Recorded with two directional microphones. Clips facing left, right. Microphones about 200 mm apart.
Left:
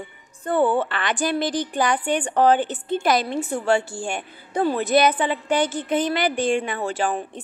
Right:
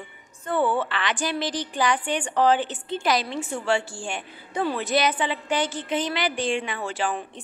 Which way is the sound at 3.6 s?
55° left (ahead or behind).